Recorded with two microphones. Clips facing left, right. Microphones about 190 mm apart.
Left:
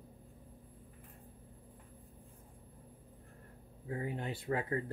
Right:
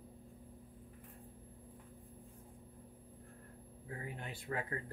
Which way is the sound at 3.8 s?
25° left (ahead or behind).